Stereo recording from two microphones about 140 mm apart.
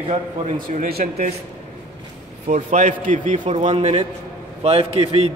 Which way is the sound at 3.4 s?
50° right (ahead or behind).